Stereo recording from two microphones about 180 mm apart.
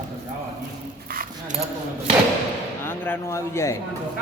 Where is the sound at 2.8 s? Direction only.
15° left (ahead or behind).